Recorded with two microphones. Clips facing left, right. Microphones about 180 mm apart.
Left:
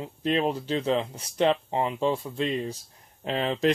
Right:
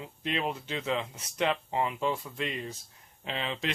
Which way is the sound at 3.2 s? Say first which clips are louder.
Left 9 dB; 45° left (ahead or behind).